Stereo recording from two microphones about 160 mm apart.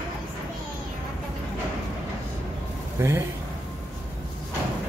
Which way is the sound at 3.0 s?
15° right (ahead or behind).